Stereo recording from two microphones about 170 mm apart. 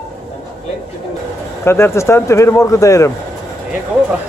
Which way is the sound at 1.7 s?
15° left (ahead or behind).